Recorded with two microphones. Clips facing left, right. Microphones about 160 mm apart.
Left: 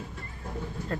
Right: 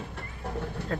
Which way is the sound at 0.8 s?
70° right (ahead or behind).